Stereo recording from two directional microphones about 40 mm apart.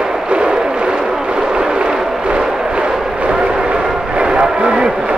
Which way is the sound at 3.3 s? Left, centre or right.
Right.